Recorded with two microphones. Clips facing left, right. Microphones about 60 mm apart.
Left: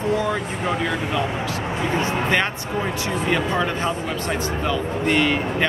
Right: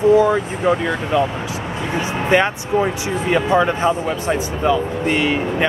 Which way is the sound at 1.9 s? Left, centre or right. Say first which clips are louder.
Right 6 dB; centre.